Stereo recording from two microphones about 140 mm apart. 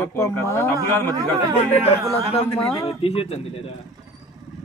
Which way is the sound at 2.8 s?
45° left (ahead or behind).